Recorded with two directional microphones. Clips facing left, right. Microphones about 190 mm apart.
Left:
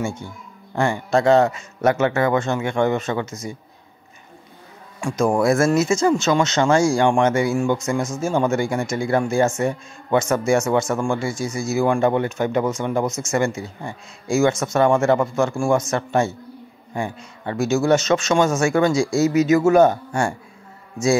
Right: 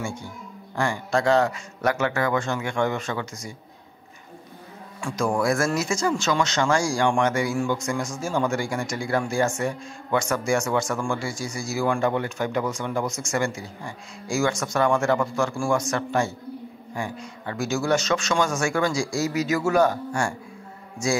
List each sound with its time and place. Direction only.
0.0 s speech: 20° left (ahead or behind)
5.0 s speech: 20° left (ahead or behind)